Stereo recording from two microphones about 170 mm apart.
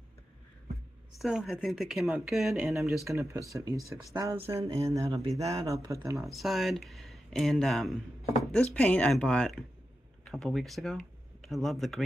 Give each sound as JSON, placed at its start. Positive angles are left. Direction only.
{"t": 1.1, "sound": "speech", "side_deg": -5}
{"t": 3.1, "sound": "speech", "side_deg": -20}
{"t": 4.5, "sound": "a sound", "side_deg": -15}
{"t": 5.5, "sound": "speech", "side_deg": -20}
{"t": 6.1, "sound": "speech", "side_deg": 0}